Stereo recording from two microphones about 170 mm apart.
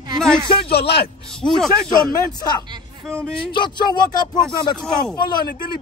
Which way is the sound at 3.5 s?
25° left (ahead or behind).